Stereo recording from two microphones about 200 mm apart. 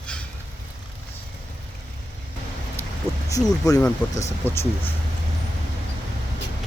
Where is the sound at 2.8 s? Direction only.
10° left (ahead or behind).